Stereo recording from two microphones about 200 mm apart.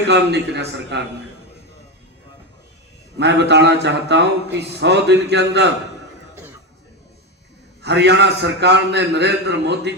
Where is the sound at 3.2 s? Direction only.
60° right (ahead or behind).